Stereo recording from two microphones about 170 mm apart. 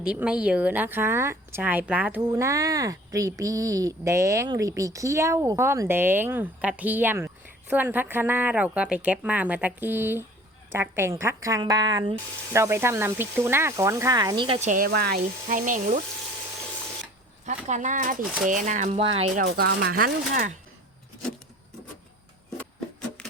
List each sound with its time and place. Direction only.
0.0 s speech: 5° right (ahead or behind)
2.3 s a woman's voice: 20° right (ahead or behind)
12.1 s speech: 15° right (ahead or behind); by 14.7 s 30° right (ahead or behind)
14.8 s speech: 75° right (ahead or behind)
15.4 s speech: 50° right (ahead or behind)
17.4 s speech: 45° right (ahead or behind)
19.5 s speech: 75° right (ahead or behind); by 20.6 s 55° right (ahead or behind)
23.0 s music: 5° left (ahead or behind)